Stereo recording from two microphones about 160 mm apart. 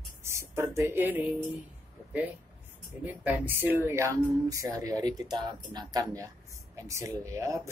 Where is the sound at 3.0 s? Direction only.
10° right (ahead or behind).